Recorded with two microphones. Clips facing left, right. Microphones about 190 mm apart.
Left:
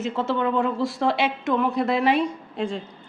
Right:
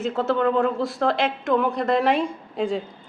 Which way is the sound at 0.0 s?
Centre (ahead or behind).